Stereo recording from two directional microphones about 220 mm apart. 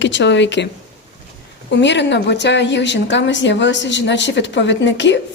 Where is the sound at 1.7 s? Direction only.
55° left (ahead or behind).